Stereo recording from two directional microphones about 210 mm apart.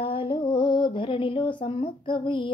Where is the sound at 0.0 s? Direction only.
25° left (ahead or behind).